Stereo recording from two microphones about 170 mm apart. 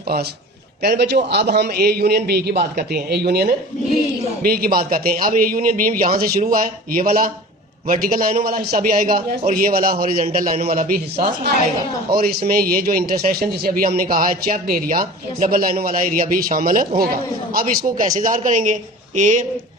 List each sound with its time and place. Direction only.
0.8 s a man's voice: 75° right (ahead or behind); by 19.5 s 45° right (ahead or behind)